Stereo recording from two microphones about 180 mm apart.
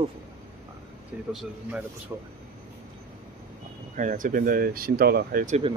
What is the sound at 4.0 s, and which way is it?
Speech, 45° right (ahead or behind).